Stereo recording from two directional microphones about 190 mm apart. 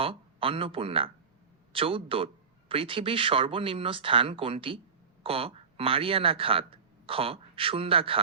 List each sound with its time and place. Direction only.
0.0 s speech: 30° right (ahead or behind)